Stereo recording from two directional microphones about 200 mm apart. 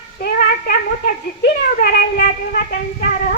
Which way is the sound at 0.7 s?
45° left (ahead or behind).